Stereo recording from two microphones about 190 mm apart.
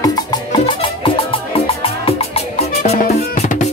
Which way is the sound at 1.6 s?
30° left (ahead or behind).